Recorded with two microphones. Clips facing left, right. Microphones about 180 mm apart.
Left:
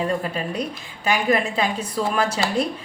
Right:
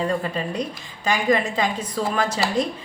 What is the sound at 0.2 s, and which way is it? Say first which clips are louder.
A woman's voice: even; 10° left (ahead or behind).